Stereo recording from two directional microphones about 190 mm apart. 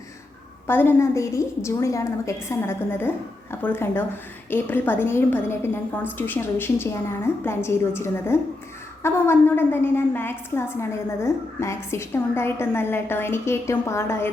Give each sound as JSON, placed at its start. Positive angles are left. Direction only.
{"t": 0.7, "sound": "a woman's voice", "side_deg": 10}